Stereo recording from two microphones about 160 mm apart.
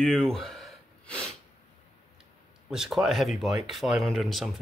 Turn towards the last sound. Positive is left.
turn(degrees=0)  # may be behind; listen again after turning